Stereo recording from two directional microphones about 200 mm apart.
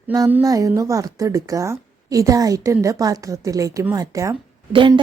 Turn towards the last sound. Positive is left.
turn(degrees=-20)  # may be behind; listen again after turning